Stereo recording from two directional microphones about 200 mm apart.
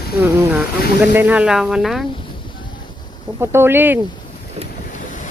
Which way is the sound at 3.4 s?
10° right (ahead or behind).